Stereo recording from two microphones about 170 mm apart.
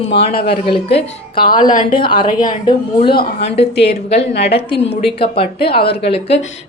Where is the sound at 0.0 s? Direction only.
35° left (ahead or behind).